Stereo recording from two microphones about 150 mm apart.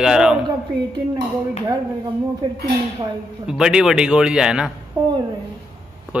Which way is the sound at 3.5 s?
5° right (ahead or behind).